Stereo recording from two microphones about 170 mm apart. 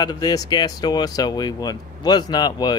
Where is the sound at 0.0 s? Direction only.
25° left (ahead or behind).